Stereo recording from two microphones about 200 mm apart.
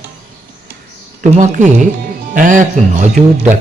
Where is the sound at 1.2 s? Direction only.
40° right (ahead or behind).